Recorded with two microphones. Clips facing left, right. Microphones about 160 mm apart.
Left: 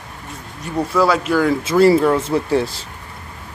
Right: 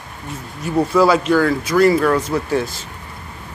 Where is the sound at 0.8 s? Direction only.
Centre (ahead or behind).